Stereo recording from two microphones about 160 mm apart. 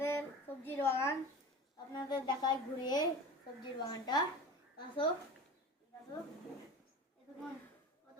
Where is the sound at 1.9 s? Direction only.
25° left (ahead or behind).